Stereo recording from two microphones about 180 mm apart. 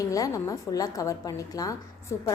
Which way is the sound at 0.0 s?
20° left (ahead or behind).